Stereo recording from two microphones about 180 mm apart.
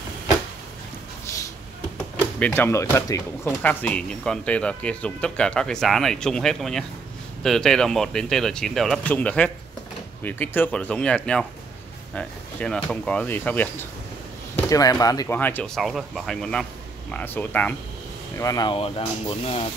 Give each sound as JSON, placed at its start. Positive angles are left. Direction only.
{"t": 2.3, "sound": "speech", "side_deg": 10}
{"t": 14.6, "sound": "speech", "side_deg": 20}
{"t": 18.4, "sound": "speech", "side_deg": 20}